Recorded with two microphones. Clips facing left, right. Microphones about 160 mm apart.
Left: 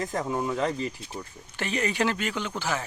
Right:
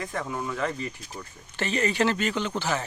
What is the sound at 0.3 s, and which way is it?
Speech, 25° left (ahead or behind).